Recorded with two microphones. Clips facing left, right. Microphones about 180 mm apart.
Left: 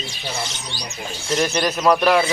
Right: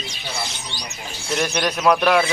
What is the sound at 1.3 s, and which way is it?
Speech, 5° left (ahead or behind).